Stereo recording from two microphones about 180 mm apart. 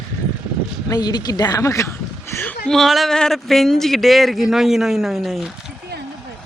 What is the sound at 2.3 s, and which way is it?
A man's voice, 5° left (ahead or behind).